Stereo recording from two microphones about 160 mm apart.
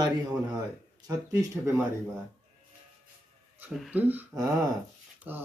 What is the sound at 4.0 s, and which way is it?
Speech, 10° right (ahead or behind).